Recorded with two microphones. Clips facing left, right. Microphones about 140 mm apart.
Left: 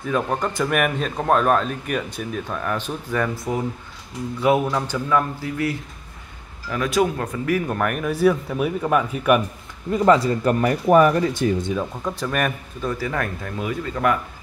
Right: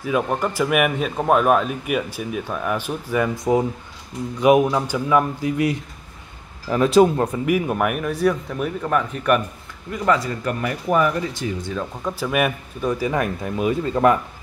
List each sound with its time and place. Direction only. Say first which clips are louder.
0.0 s speech: right 1 dB; 5° right (ahead or behind)
6.7 s speech: right 6 dB; 30° right (ahead or behind)
7.4 s speech: left 1 dB; 10° right (ahead or behind); by 9.4 s 5° left (ahead or behind)
9.8 s a man's voice: left 4 dB; 30° left (ahead or behind)
10.9 s speech: left 4 dB; 50° left (ahead or behind)
12.0 s speech: right 2 dB; 5° right (ahead or behind); by 14.1 s 25° right (ahead or behind)